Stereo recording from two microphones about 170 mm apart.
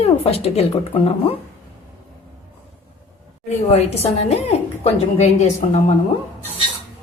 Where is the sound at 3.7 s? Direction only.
40° left (ahead or behind).